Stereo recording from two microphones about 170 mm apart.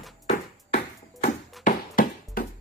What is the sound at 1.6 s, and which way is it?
Music, 50° left (ahead or behind).